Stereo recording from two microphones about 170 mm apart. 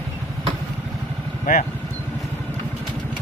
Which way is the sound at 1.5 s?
60° left (ahead or behind).